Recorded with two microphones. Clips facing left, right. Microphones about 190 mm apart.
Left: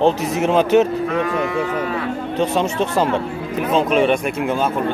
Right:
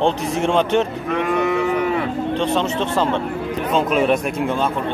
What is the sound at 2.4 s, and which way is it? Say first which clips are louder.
A man's voice: left 4 dB; 10° left (ahead or behind).